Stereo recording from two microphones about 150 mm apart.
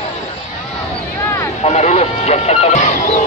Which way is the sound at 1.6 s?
50° left (ahead or behind).